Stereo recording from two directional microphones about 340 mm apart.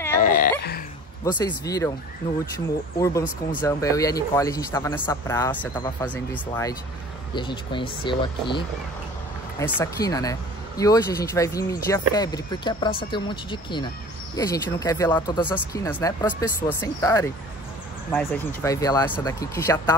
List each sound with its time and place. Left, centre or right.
0.2 s a sound: left
1.2 s speech: centre
9.7 s speech: centre